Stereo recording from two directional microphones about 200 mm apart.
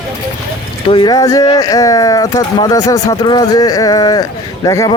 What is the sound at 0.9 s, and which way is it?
Speech, 25° left (ahead or behind).